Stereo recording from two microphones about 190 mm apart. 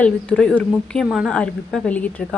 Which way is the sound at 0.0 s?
5° left (ahead or behind).